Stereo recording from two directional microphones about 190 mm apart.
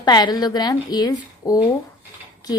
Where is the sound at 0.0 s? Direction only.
20° left (ahead or behind).